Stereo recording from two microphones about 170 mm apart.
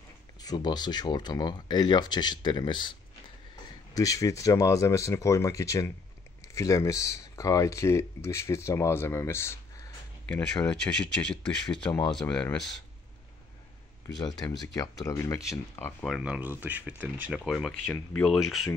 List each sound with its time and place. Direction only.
0.4 s speech: 25° left (ahead or behind)
3.9 s speech: 20° left (ahead or behind)
10.2 s speech: 5° left (ahead or behind)
14.0 s speech: 25° left (ahead or behind)
16.1 s speech: 5° right (ahead or behind)